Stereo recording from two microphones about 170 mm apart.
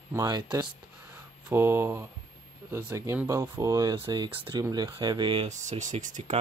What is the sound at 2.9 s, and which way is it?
Speech, 15° right (ahead or behind).